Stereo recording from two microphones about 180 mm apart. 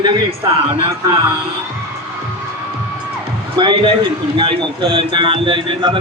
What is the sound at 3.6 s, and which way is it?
A man's voice, 25° right (ahead or behind).